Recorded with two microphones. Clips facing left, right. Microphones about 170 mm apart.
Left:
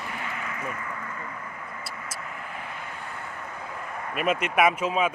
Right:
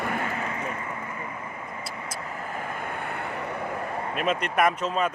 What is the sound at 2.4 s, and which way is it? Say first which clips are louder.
Vehicle: right 5 dB; 45° right (ahead or behind).